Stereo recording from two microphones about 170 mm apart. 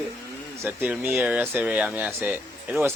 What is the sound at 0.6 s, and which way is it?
Speech, 10° right (ahead or behind).